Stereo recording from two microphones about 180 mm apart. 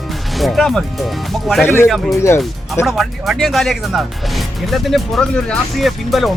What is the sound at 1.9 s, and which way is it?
Speech, centre (ahead or behind).